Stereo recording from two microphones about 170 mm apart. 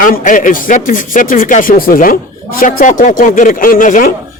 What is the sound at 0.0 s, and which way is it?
Speech, 50° left (ahead or behind).